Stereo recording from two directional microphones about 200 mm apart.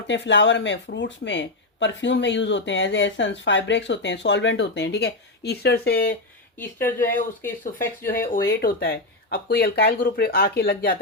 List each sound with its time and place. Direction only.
0.1 s speech: 65° left (ahead or behind)
6.6 s speech: 10° left (ahead or behind)
8.0 s speech: 45° left (ahead or behind)